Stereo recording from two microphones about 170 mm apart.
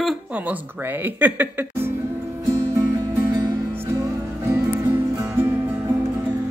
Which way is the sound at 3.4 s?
20° right (ahead or behind).